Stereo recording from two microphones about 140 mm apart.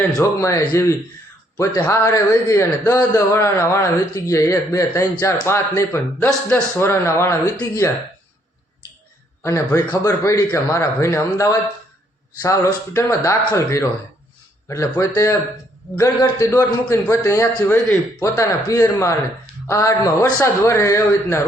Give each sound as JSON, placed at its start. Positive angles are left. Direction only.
{"t": 0.2, "sound": "a man's voice", "side_deg": 25}
{"t": 9.4, "sound": "a man's voice", "side_deg": 20}
{"t": 16.5, "sound": "a man's voice", "side_deg": 15}